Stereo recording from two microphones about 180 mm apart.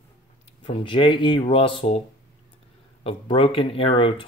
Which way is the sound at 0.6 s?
30° left (ahead or behind).